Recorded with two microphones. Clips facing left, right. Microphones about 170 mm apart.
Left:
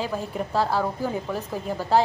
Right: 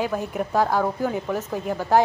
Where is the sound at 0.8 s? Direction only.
10° left (ahead or behind).